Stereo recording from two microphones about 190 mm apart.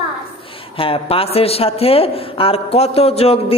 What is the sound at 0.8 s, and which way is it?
A man's voice, 30° left (ahead or behind).